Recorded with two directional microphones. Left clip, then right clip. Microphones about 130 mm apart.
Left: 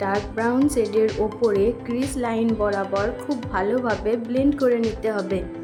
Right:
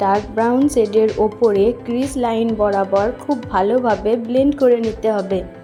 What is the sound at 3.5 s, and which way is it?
Speech, 25° right (ahead or behind).